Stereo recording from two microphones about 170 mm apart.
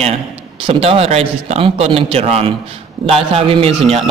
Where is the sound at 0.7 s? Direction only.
35° right (ahead or behind).